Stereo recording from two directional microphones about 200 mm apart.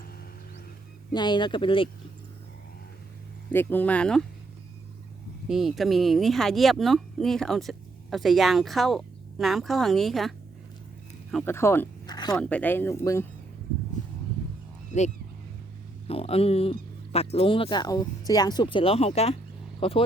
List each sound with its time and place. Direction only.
1.1 s speech: 20° left (ahead or behind)
3.5 s speech: 10° left (ahead or behind)
5.5 s speech: centre (ahead or behind); by 12.4 s 20° left (ahead or behind)
12.4 s speech: 5° left (ahead or behind)
13.9 s a sound: 40° left (ahead or behind)
16.0 s speech: 30° left (ahead or behind)